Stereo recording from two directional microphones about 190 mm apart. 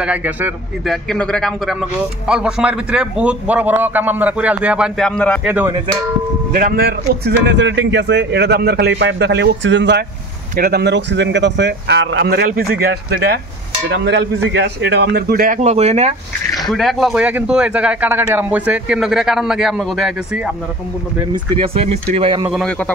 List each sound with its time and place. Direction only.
0.0 s speech: 10° right (ahead or behind)
1.0 s a man's voice: 5° left (ahead or behind)
5.4 s speech: 10° right (ahead or behind)
6.5 s a man's voice: 50° right (ahead or behind); by 10.0 s 70° right (ahead or behind)
10.5 s a man's voice: 55° right (ahead or behind)
13.8 s a man's voice: 70° right (ahead or behind); by 16.1 s 35° right (ahead or behind)
16.6 s a man's voice: centre (ahead or behind)
21.3 s speech: 30° right (ahead or behind)
22.5 s a man's voice: 5° left (ahead or behind)